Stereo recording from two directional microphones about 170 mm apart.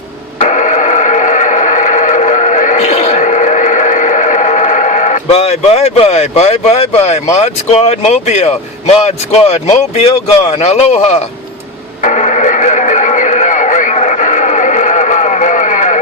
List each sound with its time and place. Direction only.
0.3 s radio: 45° left (ahead or behind)
7.3 s speech: 40° left (ahead or behind)
12.0 s radio: 45° left (ahead or behind)